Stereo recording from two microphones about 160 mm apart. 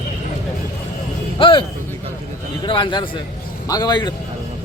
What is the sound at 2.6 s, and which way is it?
A man's voice, 30° left (ahead or behind).